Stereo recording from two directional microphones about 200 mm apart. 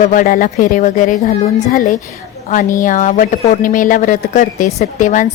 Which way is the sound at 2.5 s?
40° left (ahead or behind).